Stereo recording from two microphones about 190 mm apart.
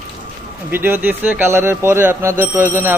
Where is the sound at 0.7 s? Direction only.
10° right (ahead or behind).